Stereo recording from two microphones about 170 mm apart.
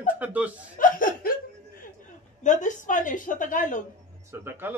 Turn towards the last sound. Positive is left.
turn(degrees=-15)  # may be behind; listen again after turning